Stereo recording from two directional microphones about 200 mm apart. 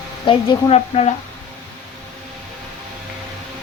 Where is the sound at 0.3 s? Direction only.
30° left (ahead or behind).